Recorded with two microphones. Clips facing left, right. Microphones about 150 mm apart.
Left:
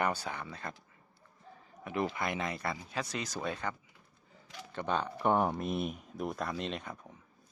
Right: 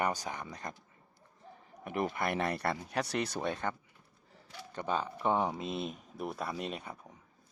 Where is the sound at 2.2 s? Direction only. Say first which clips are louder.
Right 3 dB; 60° right (ahead or behind).